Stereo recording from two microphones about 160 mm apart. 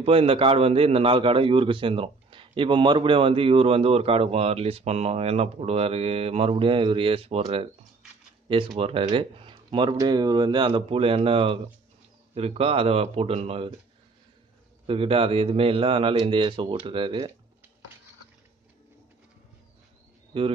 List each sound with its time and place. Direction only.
0.0 s a man's voice: 35° right (ahead or behind)
14.9 s a man's voice: 35° right (ahead or behind)
20.3 s a man's voice: 30° right (ahead or behind)